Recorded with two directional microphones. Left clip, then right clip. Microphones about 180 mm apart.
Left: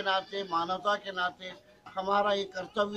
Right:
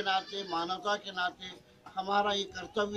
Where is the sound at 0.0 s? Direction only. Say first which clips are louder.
Left 1 dB; 15° left (ahead or behind).